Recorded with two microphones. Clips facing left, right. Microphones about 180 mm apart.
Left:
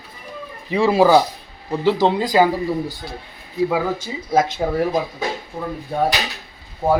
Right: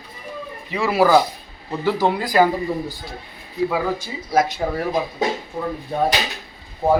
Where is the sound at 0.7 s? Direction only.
30° left (ahead or behind).